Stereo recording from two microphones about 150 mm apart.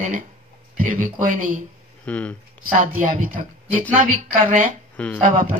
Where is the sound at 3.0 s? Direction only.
65° right (ahead or behind).